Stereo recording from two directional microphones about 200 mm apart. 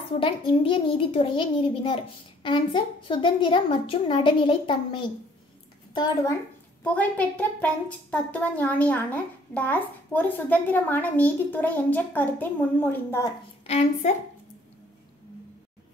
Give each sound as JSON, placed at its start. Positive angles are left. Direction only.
{"t": 0.2, "sound": "a woman's voice", "side_deg": 25}
{"t": 6.8, "sound": "a woman's voice", "side_deg": 5}
{"t": 13.7, "sound": "a woman's voice", "side_deg": 30}